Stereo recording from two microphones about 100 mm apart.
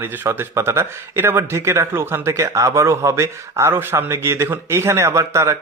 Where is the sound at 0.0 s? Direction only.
25° right (ahead or behind).